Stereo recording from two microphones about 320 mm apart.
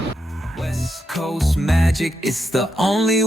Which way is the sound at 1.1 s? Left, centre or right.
Centre.